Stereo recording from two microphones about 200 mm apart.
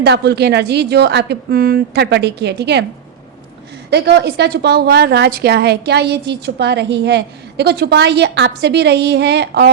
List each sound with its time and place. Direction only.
0.0 s a woman's voice: 55° right (ahead or behind)
3.8 s a woman's voice: 55° right (ahead or behind)